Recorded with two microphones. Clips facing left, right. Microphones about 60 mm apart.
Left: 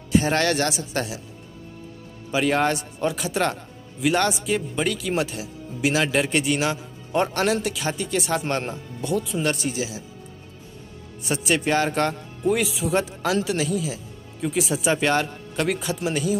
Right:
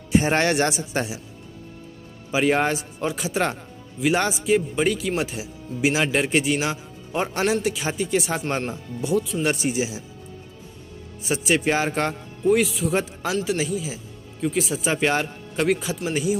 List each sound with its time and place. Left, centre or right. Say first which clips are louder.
0.2 s a man's voice: right 1 dB; right
2.3 s a man's voice: right 1 dB; centre
9.7 s speech: right 3 dB; right
11.2 s a man's voice: right 1 dB; centre